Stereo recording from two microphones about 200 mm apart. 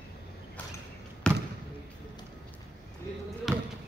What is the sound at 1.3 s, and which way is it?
Basketball bounce, 5° left (ahead or behind).